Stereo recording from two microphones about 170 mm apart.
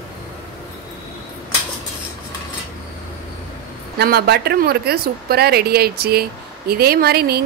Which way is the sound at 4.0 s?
70° right (ahead or behind).